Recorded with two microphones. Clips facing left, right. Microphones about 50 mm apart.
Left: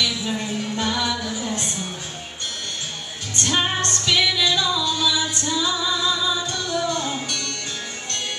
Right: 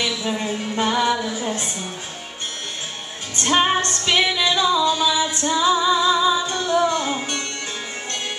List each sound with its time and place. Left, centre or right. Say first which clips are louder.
0.0 s music: right 1 dB; centre
3.4 s music: right 5 dB; right
5.1 s female singing: right 3 dB; right